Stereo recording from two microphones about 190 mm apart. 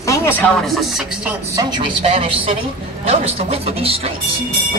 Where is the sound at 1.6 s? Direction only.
30° right (ahead or behind).